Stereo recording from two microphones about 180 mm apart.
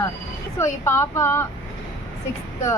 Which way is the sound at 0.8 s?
15° left (ahead or behind).